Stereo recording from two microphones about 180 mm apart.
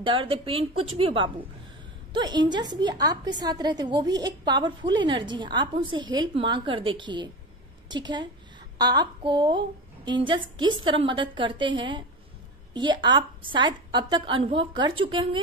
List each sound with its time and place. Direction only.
0.0 s a woman's voice: 30° right (ahead or behind)